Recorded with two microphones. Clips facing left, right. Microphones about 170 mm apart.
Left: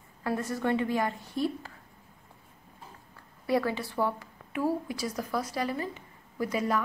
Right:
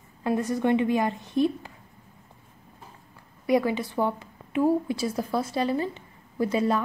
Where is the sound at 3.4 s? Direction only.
15° right (ahead or behind).